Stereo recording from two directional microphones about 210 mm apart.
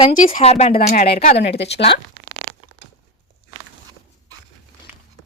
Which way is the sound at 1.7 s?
30° left (ahead or behind).